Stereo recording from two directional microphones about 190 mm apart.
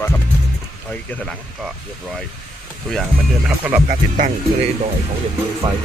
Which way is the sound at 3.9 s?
45° right (ahead or behind).